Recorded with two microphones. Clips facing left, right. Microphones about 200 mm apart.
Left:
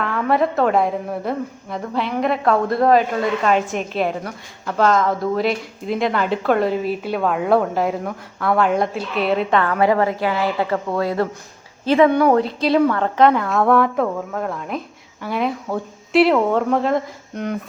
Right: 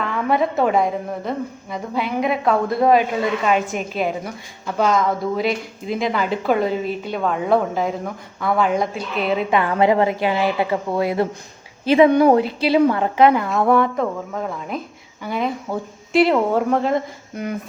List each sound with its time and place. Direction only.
0.0 s a woman's voice: centre (ahead or behind)
9.6 s a woman's voice: 20° right (ahead or behind)
12.5 s a woman's voice: 5° right (ahead or behind)